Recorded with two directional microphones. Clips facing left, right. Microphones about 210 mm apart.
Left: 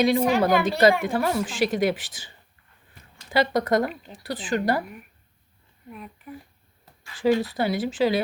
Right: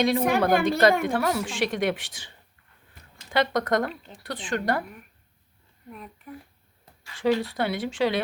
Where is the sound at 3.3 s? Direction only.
5° left (ahead or behind).